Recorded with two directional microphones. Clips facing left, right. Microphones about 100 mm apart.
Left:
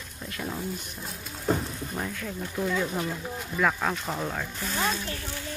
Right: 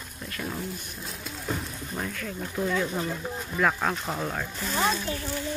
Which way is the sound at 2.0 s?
20° left (ahead or behind).